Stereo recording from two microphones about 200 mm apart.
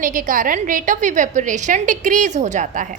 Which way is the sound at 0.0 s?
45° right (ahead or behind).